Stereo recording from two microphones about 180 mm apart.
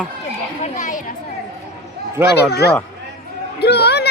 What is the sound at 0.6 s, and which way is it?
Chatter, 45° left (ahead or behind).